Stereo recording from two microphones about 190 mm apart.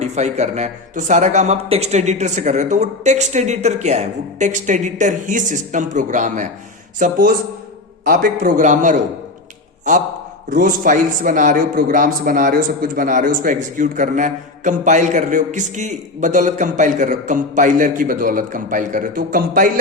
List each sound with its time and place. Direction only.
0.0 s speech: 35° right (ahead or behind)
10.5 s speech: 45° right (ahead or behind)